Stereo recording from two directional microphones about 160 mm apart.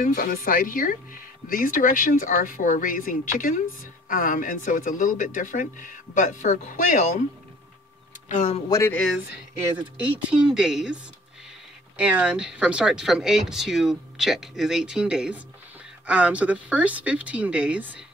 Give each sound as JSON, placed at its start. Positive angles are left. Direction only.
{"t": 0.0, "sound": "speech", "side_deg": 60}
{"t": 8.3, "sound": "speech", "side_deg": 45}
{"t": 8.6, "sound": "speech", "side_deg": 20}
{"t": 9.9, "sound": "speech", "side_deg": -5}
{"t": 12.0, "sound": "speech", "side_deg": -5}